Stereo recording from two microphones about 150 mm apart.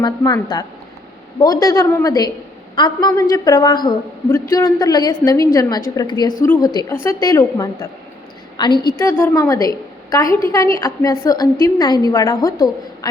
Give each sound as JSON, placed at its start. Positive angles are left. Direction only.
{"t": 0.0, "sound": "a woman's voice", "side_deg": 30}
{"t": 6.4, "sound": "a woman's voice", "side_deg": 15}
{"t": 6.7, "sound": "a woman's voice", "side_deg": 30}
{"t": 6.9, "sound": "a woman's voice", "side_deg": 15}
{"t": 9.0, "sound": "a woman's voice", "side_deg": 15}